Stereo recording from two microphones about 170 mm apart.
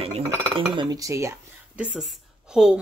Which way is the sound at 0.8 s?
20° right (ahead or behind).